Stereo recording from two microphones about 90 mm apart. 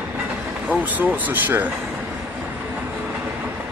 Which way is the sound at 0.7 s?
20° right (ahead or behind).